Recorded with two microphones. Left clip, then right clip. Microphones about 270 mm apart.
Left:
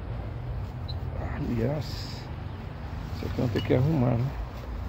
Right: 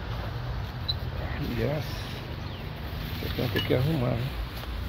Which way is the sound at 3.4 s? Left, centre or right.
Left.